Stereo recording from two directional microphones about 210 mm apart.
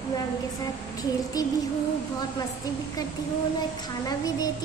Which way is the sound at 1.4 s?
15° left (ahead or behind).